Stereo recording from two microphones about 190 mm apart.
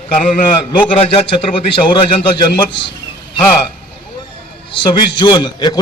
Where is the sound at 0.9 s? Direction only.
30° left (ahead or behind).